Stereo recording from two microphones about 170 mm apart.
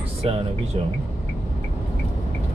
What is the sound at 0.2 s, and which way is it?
Speech, 35° right (ahead or behind).